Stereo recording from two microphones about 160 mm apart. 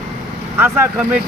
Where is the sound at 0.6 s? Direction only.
10° right (ahead or behind).